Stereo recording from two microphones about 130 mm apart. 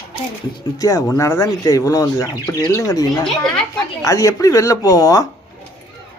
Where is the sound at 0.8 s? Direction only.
25° left (ahead or behind).